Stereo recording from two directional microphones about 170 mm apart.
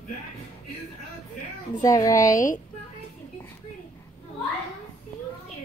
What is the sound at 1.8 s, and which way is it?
Speech, 20° left (ahead or behind).